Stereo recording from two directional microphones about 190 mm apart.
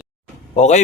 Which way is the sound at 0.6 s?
40° left (ahead or behind).